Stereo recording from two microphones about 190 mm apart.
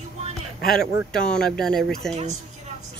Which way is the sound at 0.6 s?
5° left (ahead or behind).